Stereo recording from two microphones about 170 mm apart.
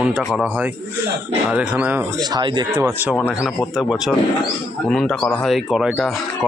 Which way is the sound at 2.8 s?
10° right (ahead or behind).